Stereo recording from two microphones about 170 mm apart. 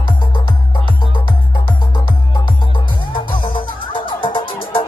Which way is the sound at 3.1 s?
30° left (ahead or behind).